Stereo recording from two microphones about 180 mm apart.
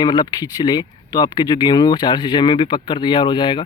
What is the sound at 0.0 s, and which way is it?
Speech, 25° left (ahead or behind).